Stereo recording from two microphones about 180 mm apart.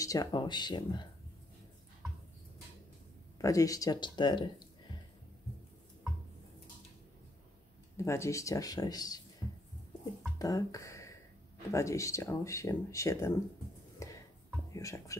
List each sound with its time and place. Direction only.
0.0 s speech: 20° left (ahead or behind)
3.3 s speech: 20° left (ahead or behind)
8.0 s speech: 15° left (ahead or behind)
10.4 s speech: 20° left (ahead or behind)
14.0 s a sound: 15° left (ahead or behind)
14.7 s speech: 15° left (ahead or behind)